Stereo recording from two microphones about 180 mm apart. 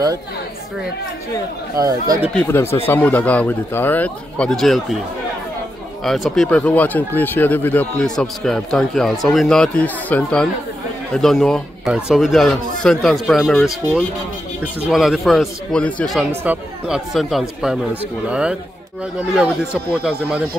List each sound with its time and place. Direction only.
1.8 s speech: 20° right (ahead or behind)
2.3 s speech: 10° left (ahead or behind)
6.0 s a man's voice: centre (ahead or behind)